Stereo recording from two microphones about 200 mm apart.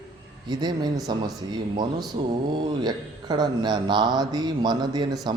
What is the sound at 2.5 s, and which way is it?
A man's voice, 20° right (ahead or behind).